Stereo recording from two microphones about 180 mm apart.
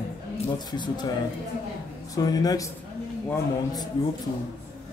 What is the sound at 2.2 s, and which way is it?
Speech, 20° left (ahead or behind).